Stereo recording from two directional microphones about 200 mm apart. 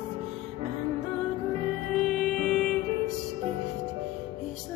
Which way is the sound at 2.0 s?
5° left (ahead or behind).